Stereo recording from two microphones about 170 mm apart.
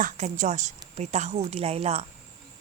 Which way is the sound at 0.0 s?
45° right (ahead or behind).